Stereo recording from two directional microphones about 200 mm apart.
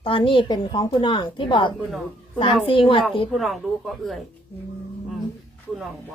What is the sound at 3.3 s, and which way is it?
Speech, centre (ahead or behind).